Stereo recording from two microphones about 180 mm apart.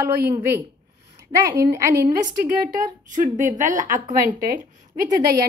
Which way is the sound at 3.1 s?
45° right (ahead or behind).